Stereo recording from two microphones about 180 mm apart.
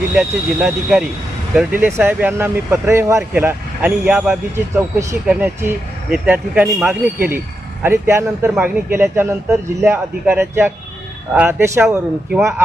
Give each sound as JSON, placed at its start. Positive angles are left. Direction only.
{"t": 0.1, "sound": "speech", "side_deg": 0}